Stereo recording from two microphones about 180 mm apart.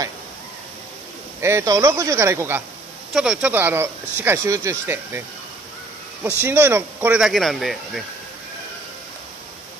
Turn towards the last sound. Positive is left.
turn(degrees=0)  # may be behind; listen again after turning